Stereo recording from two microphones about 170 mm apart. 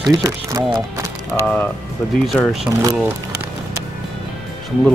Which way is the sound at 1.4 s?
5° left (ahead or behind).